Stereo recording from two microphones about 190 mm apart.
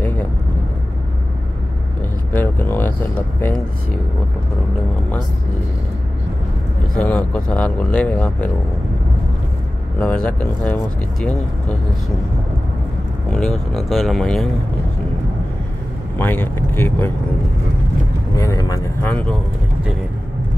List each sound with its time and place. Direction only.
0.0 s vehicle: 10° left (ahead or behind)
2.3 s a sound: 10° left (ahead or behind)
7.0 s speech: 5° left (ahead or behind)
9.9 s speech: 5° left (ahead or behind)
13.3 s speech: centre (ahead or behind)
16.2 s speech: 10° left (ahead or behind)
18.3 s vehicle: 15° left (ahead or behind)
19.0 s speech: 5° left (ahead or behind)